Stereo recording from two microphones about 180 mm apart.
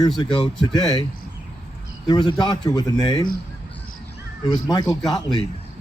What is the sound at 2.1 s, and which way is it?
Speech, 25° left (ahead or behind).